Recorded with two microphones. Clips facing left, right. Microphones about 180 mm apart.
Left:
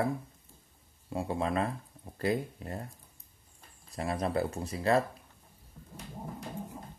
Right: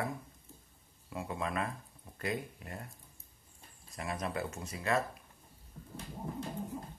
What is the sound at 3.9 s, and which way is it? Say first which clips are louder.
Speech: left 6 dB; 35° left (ahead or behind).